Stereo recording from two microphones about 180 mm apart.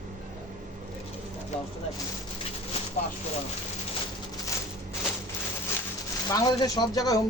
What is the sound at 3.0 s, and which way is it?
Speech, 45° left (ahead or behind).